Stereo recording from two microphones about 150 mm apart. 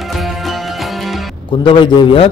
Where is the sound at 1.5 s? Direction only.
35° left (ahead or behind).